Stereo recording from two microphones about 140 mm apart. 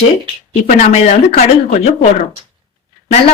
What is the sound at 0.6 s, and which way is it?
Speech, 50° left (ahead or behind).